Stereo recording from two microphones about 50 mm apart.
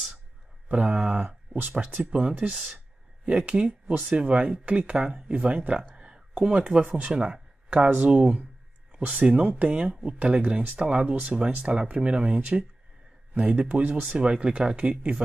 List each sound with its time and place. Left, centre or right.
0.7 s speech: right
2.5 s speech: centre
3.3 s speech: right
14.1 s speech: centre